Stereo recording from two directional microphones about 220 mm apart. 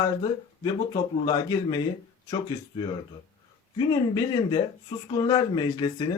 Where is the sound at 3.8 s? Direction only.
20° left (ahead or behind).